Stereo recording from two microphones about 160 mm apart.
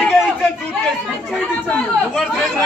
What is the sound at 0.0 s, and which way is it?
Chatter, centre (ahead or behind).